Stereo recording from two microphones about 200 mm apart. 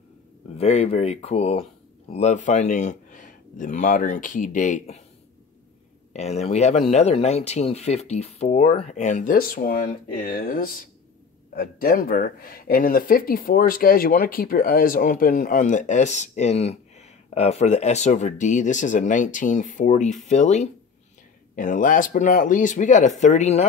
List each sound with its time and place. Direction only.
0.6 s speech: 30° left (ahead or behind)
6.1 s speech: 35° left (ahead or behind)